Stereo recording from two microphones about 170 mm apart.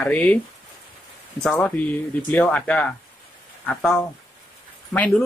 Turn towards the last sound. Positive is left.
turn(degrees=5)  # may be behind; listen again after turning